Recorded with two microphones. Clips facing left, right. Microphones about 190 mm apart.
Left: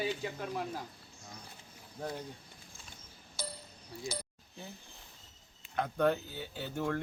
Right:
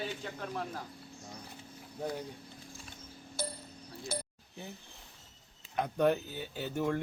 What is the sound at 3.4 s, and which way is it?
Music, 55° right (ahead or behind).